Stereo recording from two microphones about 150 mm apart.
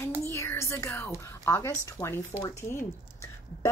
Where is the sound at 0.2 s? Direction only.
15° left (ahead or behind).